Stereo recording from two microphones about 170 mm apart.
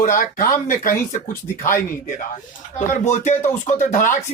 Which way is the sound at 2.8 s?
45° left (ahead or behind).